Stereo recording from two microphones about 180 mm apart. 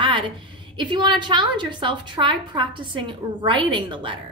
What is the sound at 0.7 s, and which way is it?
A woman's voice, 25° right (ahead or behind).